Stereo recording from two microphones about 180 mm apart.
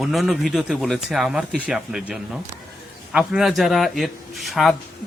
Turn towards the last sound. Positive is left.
turn(degrees=0)  # may be behind; listen again after turning